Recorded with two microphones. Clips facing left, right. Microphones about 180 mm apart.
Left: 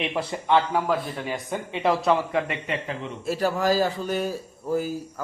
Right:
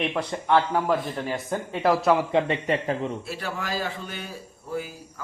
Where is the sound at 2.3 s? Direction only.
25° right (ahead or behind).